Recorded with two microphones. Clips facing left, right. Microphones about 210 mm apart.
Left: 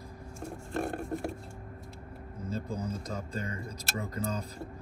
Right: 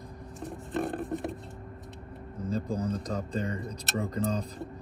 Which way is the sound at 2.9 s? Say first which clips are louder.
Right 5 dB; 5° left (ahead or behind).